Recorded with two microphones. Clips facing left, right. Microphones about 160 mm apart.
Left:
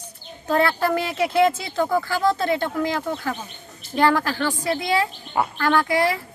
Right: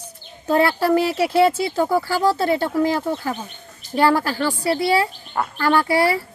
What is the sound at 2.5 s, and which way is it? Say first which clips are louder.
Speech: right 4 dB; 35° right (ahead or behind).